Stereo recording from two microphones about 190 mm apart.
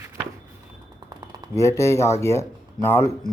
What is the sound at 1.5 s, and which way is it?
Speech, 15° left (ahead or behind).